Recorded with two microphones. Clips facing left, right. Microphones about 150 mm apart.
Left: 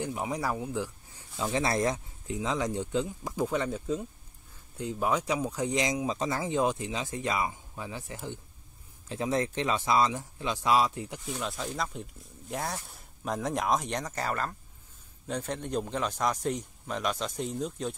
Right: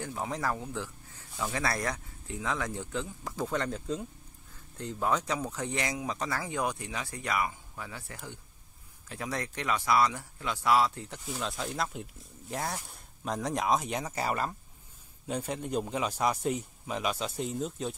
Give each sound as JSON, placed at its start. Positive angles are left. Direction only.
{"t": 0.0, "sound": "speech", "side_deg": 15}
{"t": 11.2, "sound": "speech", "side_deg": 0}